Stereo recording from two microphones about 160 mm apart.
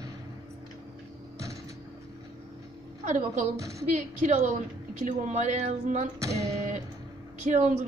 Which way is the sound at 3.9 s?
45° right (ahead or behind).